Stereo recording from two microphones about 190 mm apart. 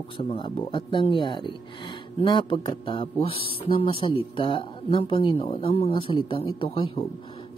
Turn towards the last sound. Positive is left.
turn(degrees=25)  # may be behind; listen again after turning